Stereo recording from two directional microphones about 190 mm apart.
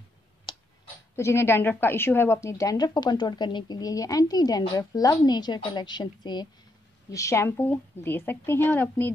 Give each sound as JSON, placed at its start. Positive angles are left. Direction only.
{"t": 1.1, "sound": "a woman's voice", "side_deg": 15}